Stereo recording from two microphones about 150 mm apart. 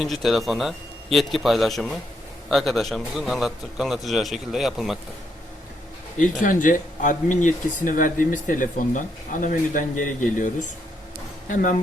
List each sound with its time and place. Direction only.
0.0 s a man's voice: centre (ahead or behind)
6.4 s speech: 60° left (ahead or behind)